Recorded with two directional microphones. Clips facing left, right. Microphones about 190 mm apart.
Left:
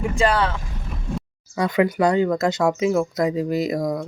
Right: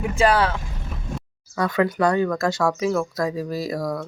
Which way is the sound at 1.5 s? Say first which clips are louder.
Left 2 dB; 20° left (ahead or behind).